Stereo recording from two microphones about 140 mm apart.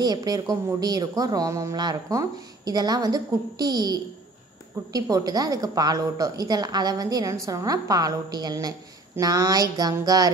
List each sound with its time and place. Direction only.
0.0 s speech: 30° right (ahead or behind)